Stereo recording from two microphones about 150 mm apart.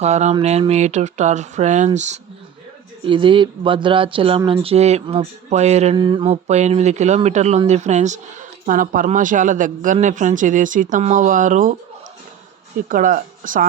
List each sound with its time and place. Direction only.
0.0 s speech: 50° right (ahead or behind)
3.1 s speech: 35° right (ahead or behind)
6.0 s speech: 35° right (ahead or behind); by 8.2 s 50° right (ahead or behind)
8.6 s speech: 65° right (ahead or behind)
12.9 s speech: 65° right (ahead or behind)